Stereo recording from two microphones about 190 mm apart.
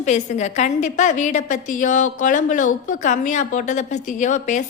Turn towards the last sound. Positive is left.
turn(degrees=40)  # may be behind; listen again after turning